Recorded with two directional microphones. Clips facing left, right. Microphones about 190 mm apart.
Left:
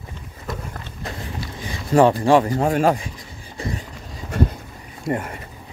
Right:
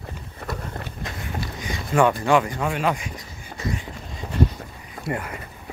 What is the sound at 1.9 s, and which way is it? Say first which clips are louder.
Speech: left 4 dB; 35° left (ahead or behind).